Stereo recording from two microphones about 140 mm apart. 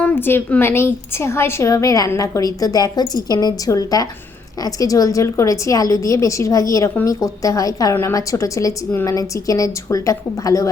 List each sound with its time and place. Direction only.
0.0 s a woman's voice: 15° left (ahead or behind)